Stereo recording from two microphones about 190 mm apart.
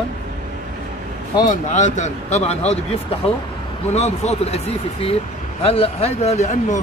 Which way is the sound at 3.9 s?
35° left (ahead or behind).